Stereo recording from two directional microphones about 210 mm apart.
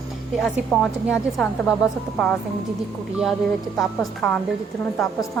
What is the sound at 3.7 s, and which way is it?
Speech, centre (ahead or behind).